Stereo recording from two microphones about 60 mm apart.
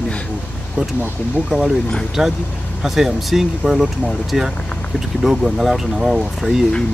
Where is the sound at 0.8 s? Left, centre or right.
Centre.